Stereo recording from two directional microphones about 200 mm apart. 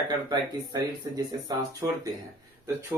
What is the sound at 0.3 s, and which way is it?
Speech, 20° right (ahead or behind).